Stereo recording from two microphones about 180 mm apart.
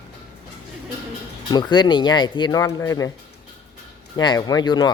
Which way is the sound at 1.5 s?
25° left (ahead or behind).